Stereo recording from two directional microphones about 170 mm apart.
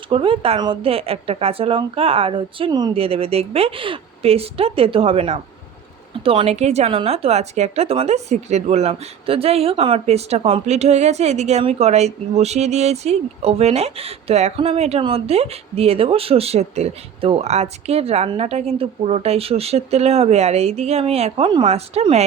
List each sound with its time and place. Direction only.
0.1 s a woman's voice: 30° right (ahead or behind)